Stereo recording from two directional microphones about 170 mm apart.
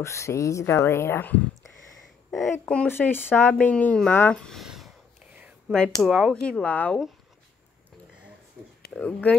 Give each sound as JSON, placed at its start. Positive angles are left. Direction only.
{"t": 0.0, "sound": "speech", "side_deg": 15}
{"t": 8.9, "sound": "speech", "side_deg": 5}